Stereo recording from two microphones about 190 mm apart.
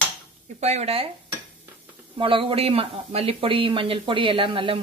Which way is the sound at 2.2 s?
25° right (ahead or behind).